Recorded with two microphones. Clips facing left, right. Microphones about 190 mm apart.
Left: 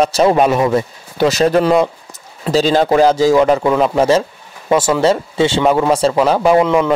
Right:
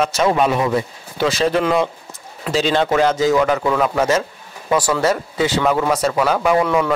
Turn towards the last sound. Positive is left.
turn(degrees=20)  # may be behind; listen again after turning